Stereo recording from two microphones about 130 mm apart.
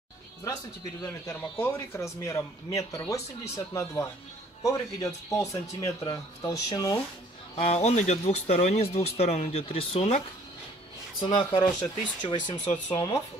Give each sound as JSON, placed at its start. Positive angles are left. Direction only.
{"t": 1.3, "sound": "speech", "side_deg": 20}
{"t": 7.5, "sound": "speech", "side_deg": 55}
{"t": 11.1, "sound": "speech", "side_deg": 35}